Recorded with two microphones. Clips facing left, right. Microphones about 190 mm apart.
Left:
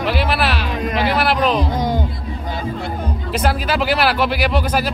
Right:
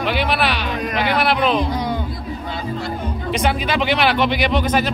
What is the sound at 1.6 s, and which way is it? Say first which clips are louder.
Music: left 2 dB; 45° left (ahead or behind).